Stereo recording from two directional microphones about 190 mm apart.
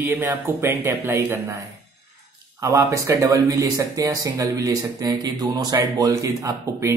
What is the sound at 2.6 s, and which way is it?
Speech, 15° right (ahead or behind).